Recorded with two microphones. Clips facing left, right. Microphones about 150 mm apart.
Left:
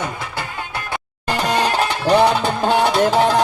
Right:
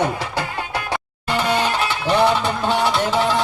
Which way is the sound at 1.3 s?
40° left (ahead or behind).